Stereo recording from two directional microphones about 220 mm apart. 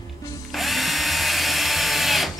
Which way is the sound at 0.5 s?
Centre (ahead or behind).